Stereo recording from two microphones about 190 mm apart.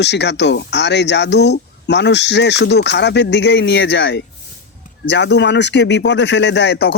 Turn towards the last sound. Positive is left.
turn(degrees=60)  # may be behind; listen again after turning